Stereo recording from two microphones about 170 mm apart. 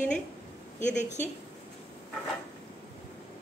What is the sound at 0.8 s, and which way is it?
Speech, 45° left (ahead or behind).